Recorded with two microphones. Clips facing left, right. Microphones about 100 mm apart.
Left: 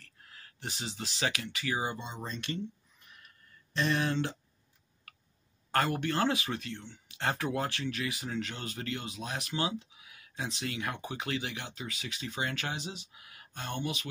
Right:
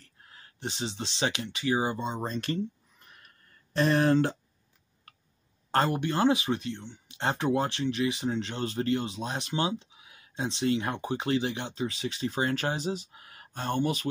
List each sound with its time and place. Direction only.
0.0 s speech: 25° right (ahead or behind); by 4.4 s 40° right (ahead or behind)
5.7 s speech: 30° right (ahead or behind)